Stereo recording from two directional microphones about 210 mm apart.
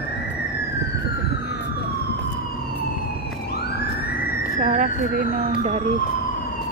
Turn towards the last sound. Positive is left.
turn(degrees=-30)  # may be behind; listen again after turning